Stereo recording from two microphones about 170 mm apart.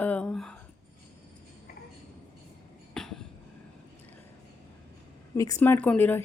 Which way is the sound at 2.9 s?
5° left (ahead or behind).